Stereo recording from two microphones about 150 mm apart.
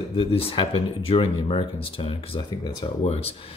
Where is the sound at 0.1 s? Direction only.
40° left (ahead or behind).